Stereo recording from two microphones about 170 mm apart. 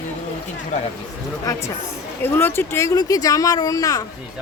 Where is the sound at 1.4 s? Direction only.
20° left (ahead or behind).